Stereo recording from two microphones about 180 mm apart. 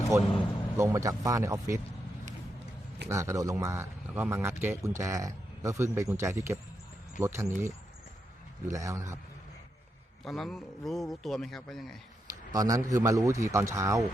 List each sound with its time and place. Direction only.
0.1 s a man's voice: 15° right (ahead or behind)
3.1 s a man's voice: 15° right (ahead or behind)
8.7 s a man's voice: 15° right (ahead or behind)
10.2 s speech: centre (ahead or behind)
12.5 s a man's voice: 20° right (ahead or behind)